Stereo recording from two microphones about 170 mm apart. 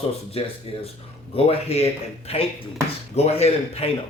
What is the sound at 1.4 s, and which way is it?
Speech, 35° left (ahead or behind).